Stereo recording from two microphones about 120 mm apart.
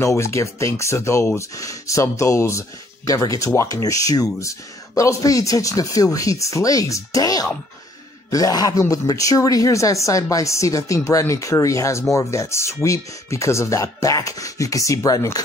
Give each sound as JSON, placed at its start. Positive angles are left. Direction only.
{"t": 0.0, "sound": "speech", "side_deg": 25}